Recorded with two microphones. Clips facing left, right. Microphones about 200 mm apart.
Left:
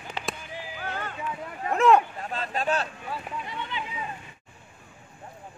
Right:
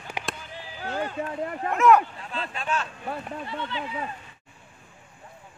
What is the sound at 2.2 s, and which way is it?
Speech, 45° left (ahead or behind).